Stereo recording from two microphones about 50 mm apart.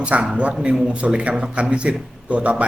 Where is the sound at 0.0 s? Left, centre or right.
Right.